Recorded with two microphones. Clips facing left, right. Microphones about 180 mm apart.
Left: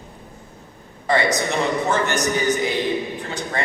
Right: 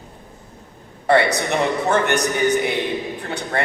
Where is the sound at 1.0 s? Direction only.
60° right (ahead or behind).